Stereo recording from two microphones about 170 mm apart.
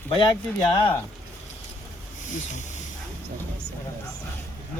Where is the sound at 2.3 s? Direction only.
45° left (ahead or behind).